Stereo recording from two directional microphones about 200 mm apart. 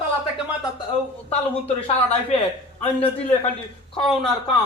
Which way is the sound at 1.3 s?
35° left (ahead or behind).